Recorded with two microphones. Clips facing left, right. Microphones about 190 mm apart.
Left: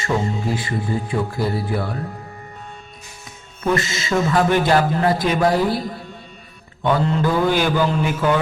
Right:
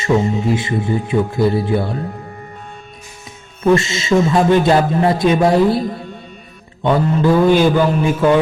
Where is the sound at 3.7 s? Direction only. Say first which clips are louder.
Right 6 dB; 25° right (ahead or behind).